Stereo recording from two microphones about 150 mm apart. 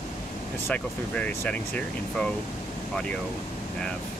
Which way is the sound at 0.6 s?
10° left (ahead or behind).